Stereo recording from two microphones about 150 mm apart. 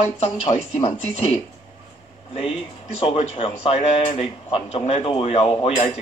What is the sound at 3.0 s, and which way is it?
Speech, 40° left (ahead or behind).